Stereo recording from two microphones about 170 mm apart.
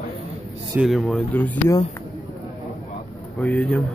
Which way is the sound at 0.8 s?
Centre (ahead or behind).